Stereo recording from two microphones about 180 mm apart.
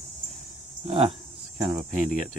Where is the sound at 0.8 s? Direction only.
35° right (ahead or behind).